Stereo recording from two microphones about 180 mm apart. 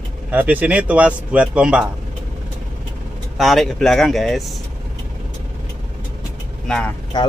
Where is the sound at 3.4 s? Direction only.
Centre (ahead or behind).